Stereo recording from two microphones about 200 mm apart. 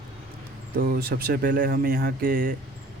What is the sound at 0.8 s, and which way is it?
Speech, 50° right (ahead or behind).